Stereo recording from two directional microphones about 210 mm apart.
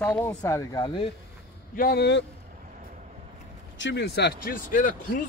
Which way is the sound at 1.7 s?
50° left (ahead or behind).